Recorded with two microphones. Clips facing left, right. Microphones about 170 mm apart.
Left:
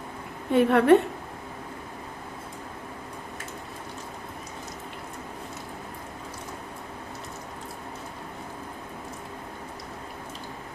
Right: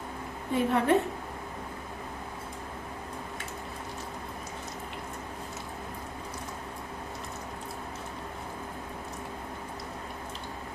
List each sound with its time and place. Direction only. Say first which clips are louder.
0.5 s a woman's voice: left 7 dB; 70° left (ahead or behind)